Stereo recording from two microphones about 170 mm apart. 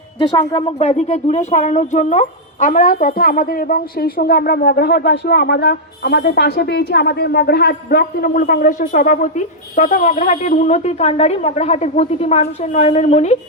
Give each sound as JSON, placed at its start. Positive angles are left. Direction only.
{"t": 0.2, "sound": "speech", "side_deg": 30}